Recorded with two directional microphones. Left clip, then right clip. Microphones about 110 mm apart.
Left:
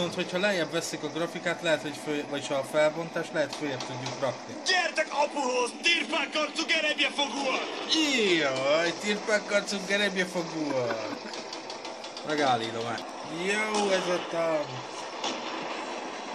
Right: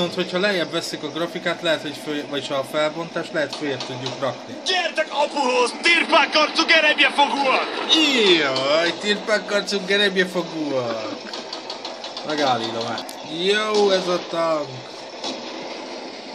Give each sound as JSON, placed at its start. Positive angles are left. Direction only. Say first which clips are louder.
{"t": 0.0, "sound": "a man's voice", "louder": "right 7 dB", "side_deg": -5}
{"t": 5.9, "sound": "a man's voice", "louder": "right 11 dB", "side_deg": -90}
{"t": 8.0, "sound": "speech", "louder": "right 7 dB", "side_deg": -5}
{"t": 12.3, "sound": "a man's voice", "louder": "right 5 dB", "side_deg": -5}
{"t": 13.4, "sound": "speech", "louder": "right 9 dB", "side_deg": -30}